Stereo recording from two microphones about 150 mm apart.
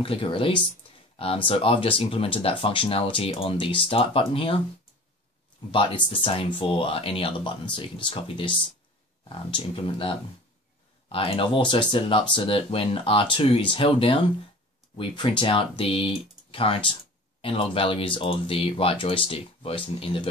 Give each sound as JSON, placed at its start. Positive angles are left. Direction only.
{"t": 0.0, "sound": "speech", "side_deg": 35}
{"t": 1.1, "sound": "a sound", "side_deg": 40}
{"t": 1.5, "sound": "speech", "side_deg": 40}
{"t": 5.7, "sound": "speech", "side_deg": 35}